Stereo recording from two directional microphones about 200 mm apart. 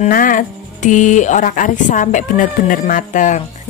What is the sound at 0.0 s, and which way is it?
A woman's voice, 40° left (ahead or behind).